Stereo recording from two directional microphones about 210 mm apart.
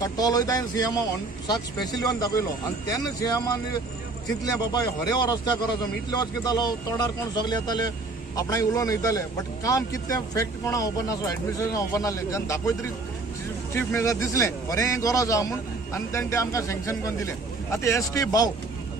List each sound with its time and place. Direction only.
0.0 s a man's voice: 15° left (ahead or behind)
13.7 s a man's voice: 15° left (ahead or behind)